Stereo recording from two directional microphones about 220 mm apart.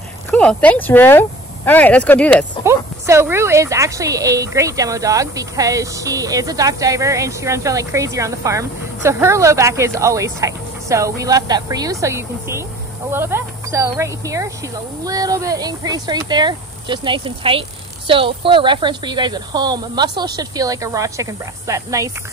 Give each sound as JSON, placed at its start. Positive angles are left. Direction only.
{"t": 0.3, "sound": "speech", "side_deg": 5}
{"t": 2.6, "sound": "speech", "side_deg": -10}